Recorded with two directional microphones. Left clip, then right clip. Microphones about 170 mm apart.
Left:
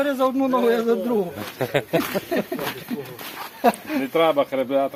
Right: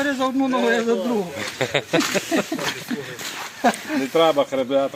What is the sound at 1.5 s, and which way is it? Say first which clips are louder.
Speech: right 1 dB; 20° left (ahead or behind).